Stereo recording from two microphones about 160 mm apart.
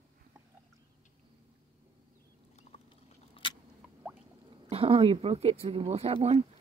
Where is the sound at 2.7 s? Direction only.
40° left (ahead or behind).